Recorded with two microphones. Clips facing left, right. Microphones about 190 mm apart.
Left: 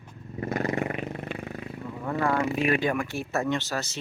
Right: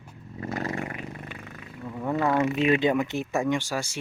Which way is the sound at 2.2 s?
20° right (ahead or behind).